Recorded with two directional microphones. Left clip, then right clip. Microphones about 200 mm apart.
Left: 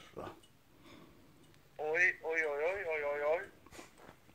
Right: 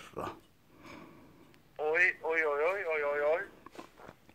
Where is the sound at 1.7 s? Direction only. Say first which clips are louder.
Right 3 dB; 40° right (ahead or behind).